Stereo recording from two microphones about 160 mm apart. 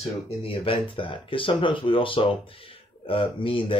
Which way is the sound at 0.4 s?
35° left (ahead or behind).